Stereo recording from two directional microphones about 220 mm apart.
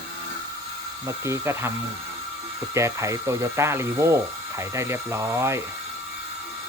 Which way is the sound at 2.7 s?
15° right (ahead or behind).